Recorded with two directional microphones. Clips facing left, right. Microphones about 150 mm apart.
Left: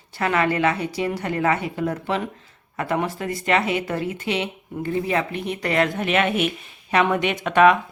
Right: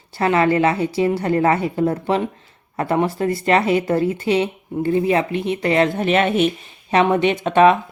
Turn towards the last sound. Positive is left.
turn(degrees=-30)  # may be behind; listen again after turning